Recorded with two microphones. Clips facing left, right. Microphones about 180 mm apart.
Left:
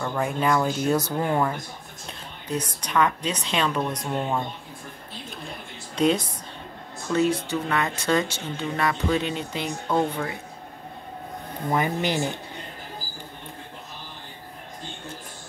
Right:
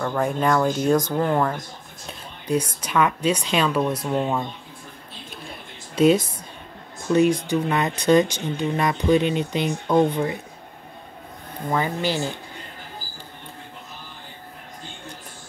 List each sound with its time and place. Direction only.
0.0 s speech: 5° left (ahead or behind)
2.4 s speech: 10° right (ahead or behind)
5.9 s speech: 5° right (ahead or behind)
11.7 s speech: 20° left (ahead or behind)